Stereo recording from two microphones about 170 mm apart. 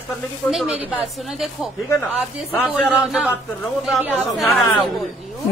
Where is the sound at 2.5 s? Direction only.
10° left (ahead or behind).